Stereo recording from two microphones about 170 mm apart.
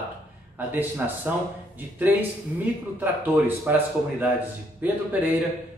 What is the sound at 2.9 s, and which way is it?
A man's voice, 10° right (ahead or behind).